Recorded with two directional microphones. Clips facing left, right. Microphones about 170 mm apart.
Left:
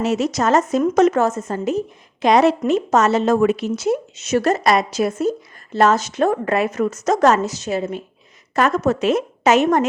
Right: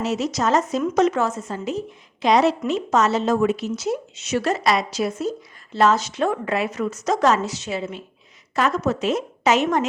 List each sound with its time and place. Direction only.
0.0 s a woman's voice: 55° left (ahead or behind)